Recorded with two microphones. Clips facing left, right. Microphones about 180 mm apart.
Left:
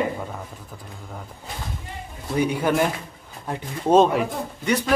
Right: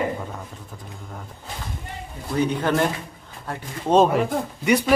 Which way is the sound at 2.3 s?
10° left (ahead or behind).